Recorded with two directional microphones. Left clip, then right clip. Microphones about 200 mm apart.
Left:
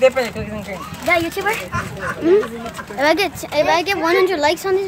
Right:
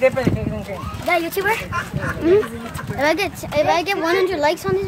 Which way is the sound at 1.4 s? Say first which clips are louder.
Right 1 dB; 25° right (ahead or behind).